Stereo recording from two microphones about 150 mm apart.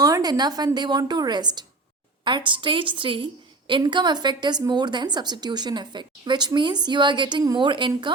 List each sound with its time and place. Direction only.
0.0 s a woman's voice: 25° right (ahead or behind)